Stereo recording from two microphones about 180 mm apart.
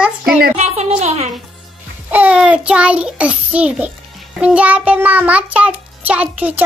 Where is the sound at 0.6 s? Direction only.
40° right (ahead or behind).